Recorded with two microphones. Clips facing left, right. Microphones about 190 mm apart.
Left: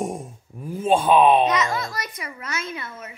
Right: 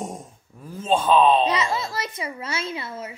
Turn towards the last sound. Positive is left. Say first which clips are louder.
# right 3 dB
turn(degrees=-30)  # may be behind; listen again after turning